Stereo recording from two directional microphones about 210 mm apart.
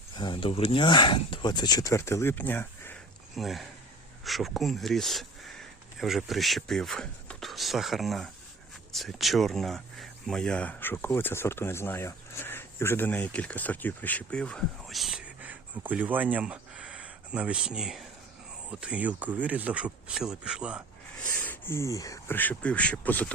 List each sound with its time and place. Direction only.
0.2 s speech: 25° left (ahead or behind); by 20.8 s 5° right (ahead or behind)
21.2 s speech: 10° left (ahead or behind)